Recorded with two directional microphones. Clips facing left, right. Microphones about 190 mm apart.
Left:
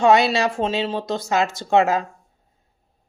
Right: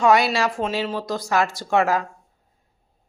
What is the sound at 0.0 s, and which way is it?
Speech, 25° left (ahead or behind).